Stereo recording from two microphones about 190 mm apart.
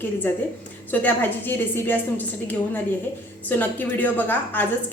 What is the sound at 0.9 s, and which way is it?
A woman's voice, 10° left (ahead or behind).